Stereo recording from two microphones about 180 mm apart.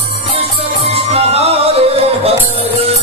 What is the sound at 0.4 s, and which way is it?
Music, 35° right (ahead or behind).